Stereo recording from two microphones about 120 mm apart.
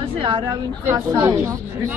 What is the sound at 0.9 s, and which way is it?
Speech, 20° right (ahead or behind).